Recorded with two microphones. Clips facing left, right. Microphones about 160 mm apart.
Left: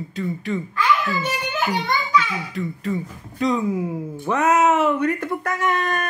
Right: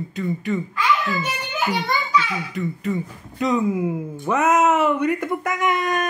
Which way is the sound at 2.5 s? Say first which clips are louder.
Right 1 dB; centre (ahead or behind).